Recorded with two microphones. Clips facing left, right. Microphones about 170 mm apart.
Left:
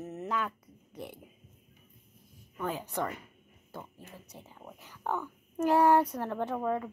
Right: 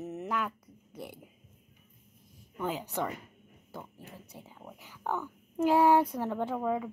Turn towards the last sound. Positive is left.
turn(degrees=-5)  # may be behind; listen again after turning